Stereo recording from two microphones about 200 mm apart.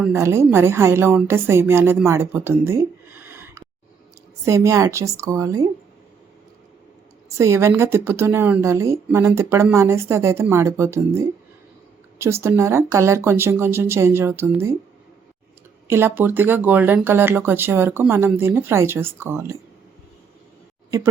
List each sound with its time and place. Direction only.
0.0 s speech: 10° right (ahead or behind)
7.3 s speech: 15° right (ahead or behind)
15.9 s speech: 10° right (ahead or behind)
20.9 s speech: 15° right (ahead or behind)